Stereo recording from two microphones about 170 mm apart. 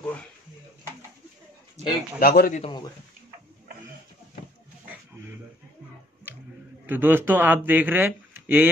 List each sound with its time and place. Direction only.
1.8 s speech: 40° right (ahead or behind)
2.1 s a man's voice: 60° left (ahead or behind)
2.6 s speech: 25° left (ahead or behind)
6.9 s speech: 10° right (ahead or behind)